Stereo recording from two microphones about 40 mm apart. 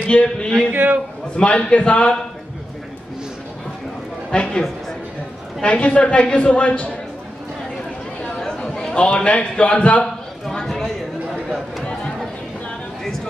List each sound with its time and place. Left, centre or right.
0.0 s a man's voice: left
0.6 s a man's voice: right
1.3 s a man's voice: left
4.3 s a man's voice: left
5.7 s a woman's voice: left
8.2 s a sound: centre